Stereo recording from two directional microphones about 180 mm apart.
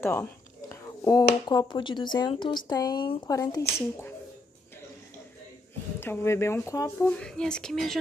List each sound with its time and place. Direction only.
0.0 s speech: 10° left (ahead or behind)
5.9 s speech: 15° left (ahead or behind)
7.1 s speech: 5° left (ahead or behind)